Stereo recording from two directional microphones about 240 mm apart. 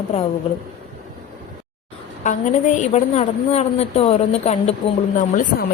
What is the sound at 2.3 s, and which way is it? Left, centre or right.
A woman's voice, left.